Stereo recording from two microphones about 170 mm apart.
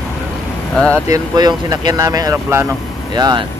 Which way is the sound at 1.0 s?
20° right (ahead or behind).